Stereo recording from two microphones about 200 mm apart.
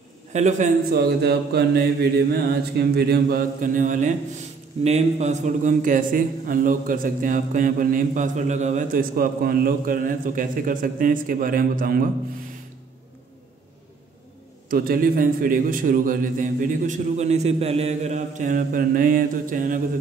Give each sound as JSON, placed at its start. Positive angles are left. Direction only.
{"t": 0.3, "sound": "a man's voice", "side_deg": -35}
{"t": 0.9, "sound": "a man's voice", "side_deg": -55}
{"t": 14.7, "sound": "a man's voice", "side_deg": -45}